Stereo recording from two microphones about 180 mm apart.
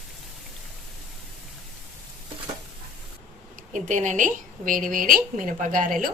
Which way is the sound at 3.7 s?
45° right (ahead or behind).